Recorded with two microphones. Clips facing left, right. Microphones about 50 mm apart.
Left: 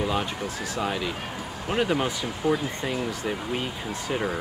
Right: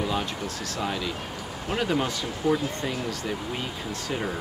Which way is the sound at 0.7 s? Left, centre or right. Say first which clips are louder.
Left 1 dB; centre.